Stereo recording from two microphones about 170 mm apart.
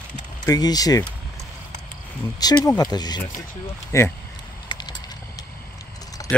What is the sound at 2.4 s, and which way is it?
Speech, 20° left (ahead or behind).